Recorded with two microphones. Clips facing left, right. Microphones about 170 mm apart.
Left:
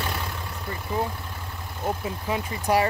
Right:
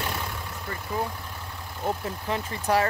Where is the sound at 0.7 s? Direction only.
15° left (ahead or behind).